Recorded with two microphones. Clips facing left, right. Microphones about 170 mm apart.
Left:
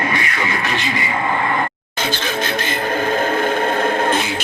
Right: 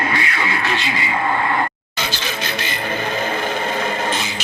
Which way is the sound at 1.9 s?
50° left (ahead or behind).